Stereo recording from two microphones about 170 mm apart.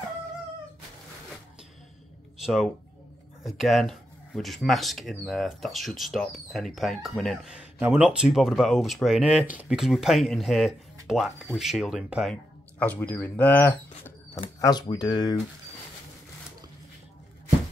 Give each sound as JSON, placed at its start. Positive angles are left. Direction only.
{"t": 2.4, "sound": "speech", "side_deg": 0}
{"t": 12.7, "sound": "speech", "side_deg": 10}
{"t": 14.3, "sound": "speech", "side_deg": 20}